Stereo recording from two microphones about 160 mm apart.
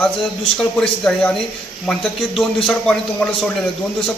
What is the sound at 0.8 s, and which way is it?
A man's voice, 5° left (ahead or behind).